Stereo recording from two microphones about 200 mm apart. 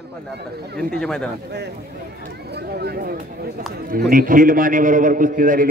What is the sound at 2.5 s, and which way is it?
A man's voice, 55° right (ahead or behind).